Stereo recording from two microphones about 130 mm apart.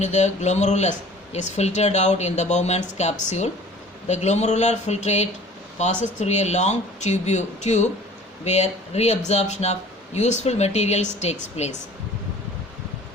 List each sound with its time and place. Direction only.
0.0 s speech: 60° left (ahead or behind)